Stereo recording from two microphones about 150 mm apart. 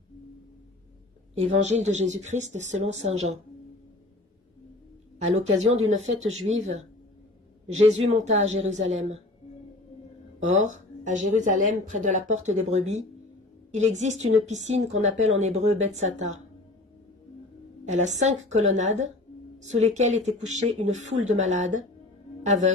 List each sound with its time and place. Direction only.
1.6 s a woman's voice: 50° right (ahead or behind)
5.2 s a woman's voice: 45° right (ahead or behind)
7.8 s a woman's voice: 45° right (ahead or behind)
10.4 s a woman's voice: 50° right (ahead or behind)
17.8 s a woman's voice: 50° right (ahead or behind)